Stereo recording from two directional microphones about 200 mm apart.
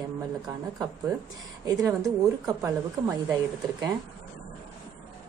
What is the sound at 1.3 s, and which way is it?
Speech, 20° right (ahead or behind).